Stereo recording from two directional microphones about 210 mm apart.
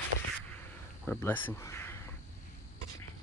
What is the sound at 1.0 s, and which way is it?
Speech, 10° left (ahead or behind).